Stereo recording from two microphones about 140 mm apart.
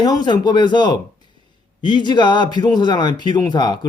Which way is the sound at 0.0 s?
30° left (ahead or behind).